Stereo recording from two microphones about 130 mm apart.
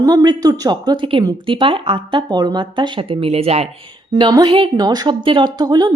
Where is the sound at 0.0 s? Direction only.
30° right (ahead or behind); by 3.7 s 55° right (ahead or behind).